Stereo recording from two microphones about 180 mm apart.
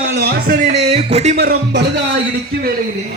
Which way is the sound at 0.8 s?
35° right (ahead or behind).